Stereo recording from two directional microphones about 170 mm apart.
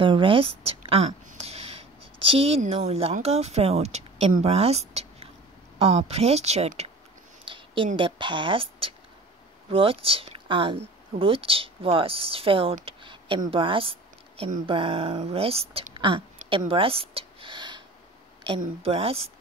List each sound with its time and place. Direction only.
0.0 s speech: 30° right (ahead or behind)
12.8 s a sound: 30° right (ahead or behind)
13.5 s speech: 30° right (ahead or behind)